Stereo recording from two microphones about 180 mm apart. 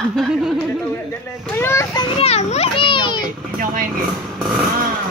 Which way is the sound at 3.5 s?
50° right (ahead or behind).